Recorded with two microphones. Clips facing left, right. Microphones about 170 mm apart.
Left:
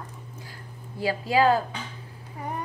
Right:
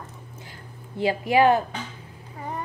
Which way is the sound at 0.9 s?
20° right (ahead or behind).